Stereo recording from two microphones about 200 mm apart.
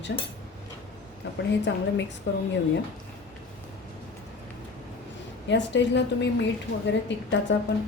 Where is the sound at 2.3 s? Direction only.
60° left (ahead or behind).